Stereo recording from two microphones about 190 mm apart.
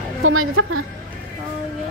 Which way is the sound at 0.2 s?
90° right.